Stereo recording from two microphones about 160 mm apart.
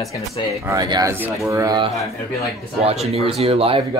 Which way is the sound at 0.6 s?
15° right (ahead or behind).